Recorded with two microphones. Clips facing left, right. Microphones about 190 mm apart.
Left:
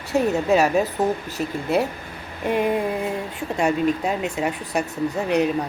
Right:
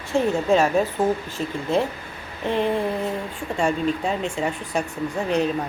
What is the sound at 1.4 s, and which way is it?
Dishes, 10° left (ahead or behind).